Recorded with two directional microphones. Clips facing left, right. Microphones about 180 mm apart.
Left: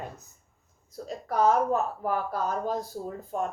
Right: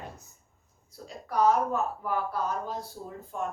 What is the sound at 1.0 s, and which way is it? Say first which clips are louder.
A woman's voice: left 1 dB; 45° left (ahead or behind).